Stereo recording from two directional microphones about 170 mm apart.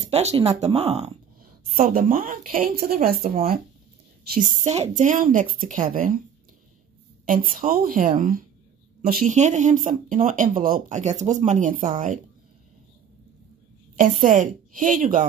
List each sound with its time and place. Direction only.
0.1 s speech: 40° right (ahead or behind)
1.6 s a woman's voice: 55° right (ahead or behind)
4.6 s speech: 40° right (ahead or behind)
7.2 s speech: 55° right (ahead or behind)
14.2 s speech: 50° right (ahead or behind)